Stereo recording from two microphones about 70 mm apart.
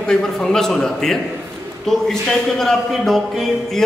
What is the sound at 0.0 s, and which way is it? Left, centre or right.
A man's voice, centre.